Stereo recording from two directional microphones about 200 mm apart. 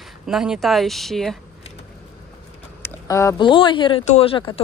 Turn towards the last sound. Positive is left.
turn(degrees=25)  # may be behind; listen again after turning